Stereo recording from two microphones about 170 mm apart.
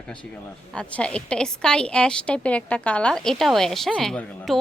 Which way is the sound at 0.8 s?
5° left (ahead or behind).